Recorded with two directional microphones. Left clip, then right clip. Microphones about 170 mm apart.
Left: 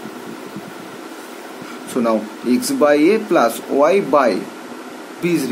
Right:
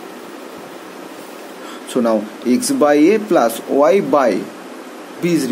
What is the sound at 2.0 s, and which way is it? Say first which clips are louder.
Speech: right 1 dB; 20° right (ahead or behind).